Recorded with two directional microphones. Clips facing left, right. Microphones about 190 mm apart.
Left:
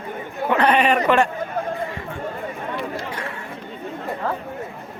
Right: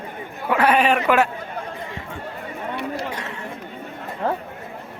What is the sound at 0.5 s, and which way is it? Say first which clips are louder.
Speech: even; 5° right (ahead or behind).